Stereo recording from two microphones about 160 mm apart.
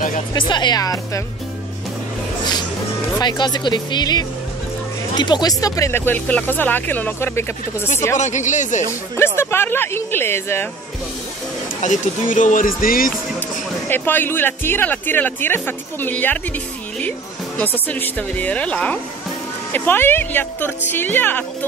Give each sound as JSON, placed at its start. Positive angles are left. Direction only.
{"t": 0.3, "sound": "speech", "side_deg": 30}
{"t": 3.2, "sound": "speech", "side_deg": 25}
{"t": 8.2, "sound": "speech", "side_deg": 50}
{"t": 9.1, "sound": "speech", "side_deg": 15}
{"t": 11.8, "sound": "speech", "side_deg": 50}
{"t": 13.8, "sound": "speech", "side_deg": 15}
{"t": 17.6, "sound": "speech", "side_deg": 10}